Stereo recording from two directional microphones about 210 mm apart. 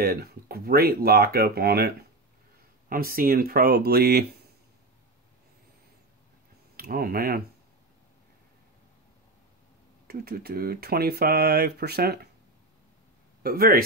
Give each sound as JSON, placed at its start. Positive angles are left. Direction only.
{"t": 0.0, "sound": "speech", "side_deg": -45}
{"t": 2.9, "sound": "speech", "side_deg": -45}
{"t": 6.8, "sound": "speech", "side_deg": -45}
{"t": 10.0, "sound": "speech", "side_deg": -50}
{"t": 13.4, "sound": "speech", "side_deg": -45}